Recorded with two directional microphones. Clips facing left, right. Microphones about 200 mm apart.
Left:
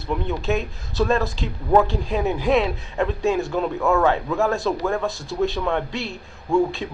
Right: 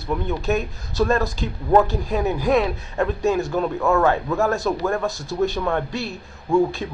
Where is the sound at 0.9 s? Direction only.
Centre (ahead or behind).